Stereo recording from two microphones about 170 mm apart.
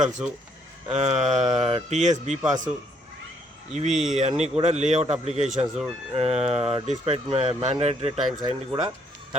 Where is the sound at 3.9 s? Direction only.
Centre (ahead or behind).